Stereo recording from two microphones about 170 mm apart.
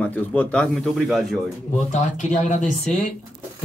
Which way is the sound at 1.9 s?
45° left (ahead or behind).